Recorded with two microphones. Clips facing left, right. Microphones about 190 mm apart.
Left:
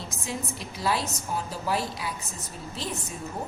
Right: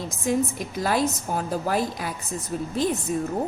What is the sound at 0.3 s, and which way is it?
A woman's voice, 50° right (ahead or behind).